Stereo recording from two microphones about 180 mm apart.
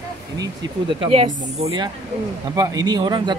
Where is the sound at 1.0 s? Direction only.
30° right (ahead or behind).